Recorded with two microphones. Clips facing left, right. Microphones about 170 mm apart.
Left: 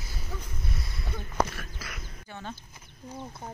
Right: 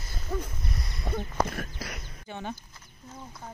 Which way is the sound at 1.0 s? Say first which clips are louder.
Right 1 dB; 60° right (ahead or behind).